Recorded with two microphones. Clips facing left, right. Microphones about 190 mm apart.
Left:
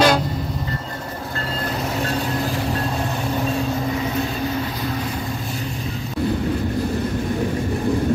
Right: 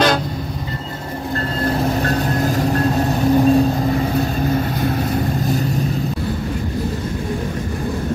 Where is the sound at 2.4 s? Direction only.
45° right (ahead or behind).